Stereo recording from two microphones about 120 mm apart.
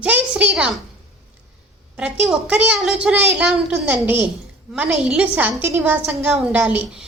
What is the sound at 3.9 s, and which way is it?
A woman's voice, 15° right (ahead or behind).